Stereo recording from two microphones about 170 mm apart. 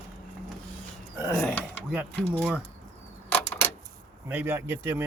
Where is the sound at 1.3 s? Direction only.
10° left (ahead or behind).